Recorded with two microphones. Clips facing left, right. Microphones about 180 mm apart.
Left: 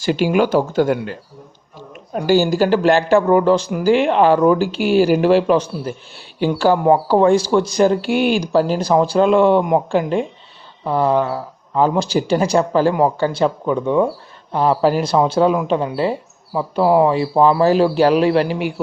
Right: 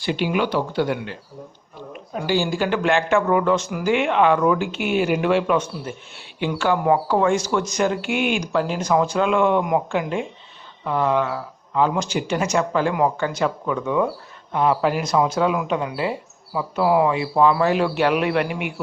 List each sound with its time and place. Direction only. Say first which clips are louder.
0.0 s speech: left 6 dB; 40° left (ahead or behind)
2.1 s speech: left 7 dB; 45° left (ahead or behind)